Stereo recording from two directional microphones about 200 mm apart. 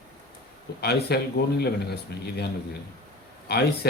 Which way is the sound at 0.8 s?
55° left (ahead or behind).